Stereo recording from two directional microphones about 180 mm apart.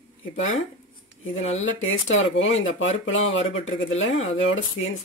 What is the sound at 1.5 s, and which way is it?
Speech, 90° left.